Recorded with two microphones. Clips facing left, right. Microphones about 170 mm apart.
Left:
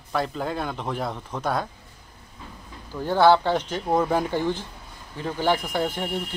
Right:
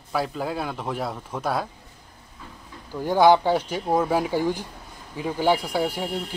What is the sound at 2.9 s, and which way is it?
Speech, 15° right (ahead or behind).